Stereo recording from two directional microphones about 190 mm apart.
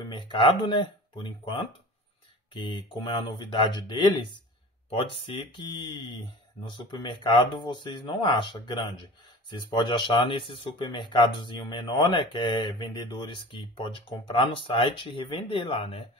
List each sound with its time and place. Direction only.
0.1 s speech: 25° left (ahead or behind)